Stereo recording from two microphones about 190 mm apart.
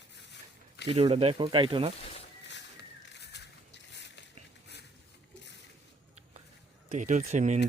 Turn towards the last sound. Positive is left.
turn(degrees=-40)  # may be behind; listen again after turning